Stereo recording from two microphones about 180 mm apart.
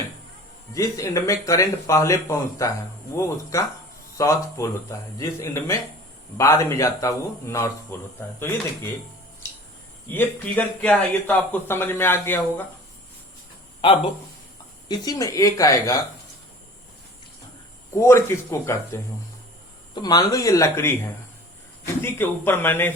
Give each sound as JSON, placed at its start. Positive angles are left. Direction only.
{"t": 0.7, "sound": "speech", "side_deg": 20}
{"t": 10.1, "sound": "speech", "side_deg": 10}
{"t": 14.8, "sound": "speech", "side_deg": 20}
{"t": 17.9, "sound": "speech", "side_deg": 15}
{"t": 22.0, "sound": "speech", "side_deg": 15}